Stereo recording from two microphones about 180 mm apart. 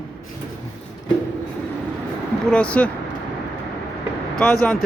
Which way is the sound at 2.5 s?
5° left (ahead or behind).